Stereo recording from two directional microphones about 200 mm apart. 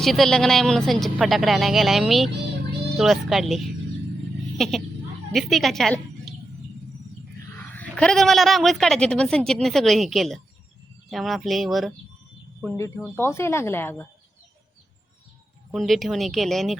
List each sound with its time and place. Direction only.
0.0 s speech: centre (ahead or behind)
7.6 s speech: 10° left (ahead or behind)
12.6 s speech: 15° left (ahead or behind)
15.7 s speech: centre (ahead or behind)